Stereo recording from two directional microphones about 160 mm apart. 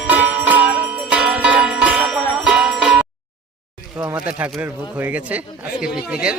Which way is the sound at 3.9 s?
15° right (ahead or behind).